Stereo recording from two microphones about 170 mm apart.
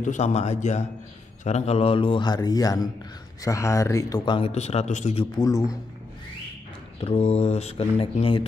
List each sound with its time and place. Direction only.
0.0 s a man's voice: 45° left (ahead or behind); by 4.5 s 25° left (ahead or behind)
4.5 s speech: 40° left (ahead or behind)
5.2 s a man's voice: 25° left (ahead or behind)
7.0 s speech: 35° left (ahead or behind)